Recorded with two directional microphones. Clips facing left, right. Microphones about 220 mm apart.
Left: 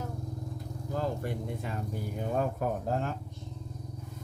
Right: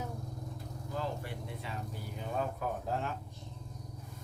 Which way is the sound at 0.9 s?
45° left (ahead or behind).